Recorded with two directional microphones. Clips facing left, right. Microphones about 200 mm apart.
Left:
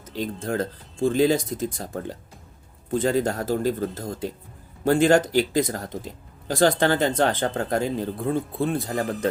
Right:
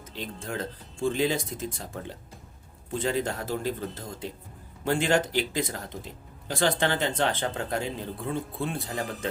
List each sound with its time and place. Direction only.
0.2 s speech: 45° left (ahead or behind)